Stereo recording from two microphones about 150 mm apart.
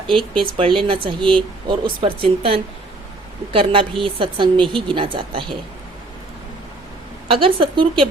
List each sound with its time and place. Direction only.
0.3 s speech: 35° right (ahead or behind)
7.3 s speech: 35° right (ahead or behind)